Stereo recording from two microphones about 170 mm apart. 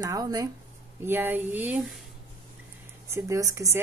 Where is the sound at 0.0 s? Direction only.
20° right (ahead or behind).